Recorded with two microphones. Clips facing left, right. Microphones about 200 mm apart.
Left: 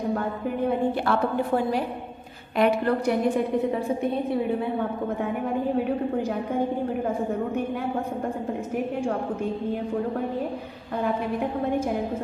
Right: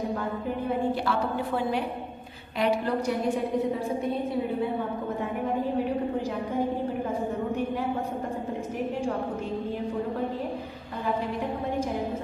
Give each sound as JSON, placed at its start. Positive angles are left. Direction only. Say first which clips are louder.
{"t": 1.0, "sound": "a woman's voice", "louder": "left 4 dB", "side_deg": 45}
{"t": 2.5, "sound": "a woman's voice", "louder": "left 4 dB", "side_deg": 60}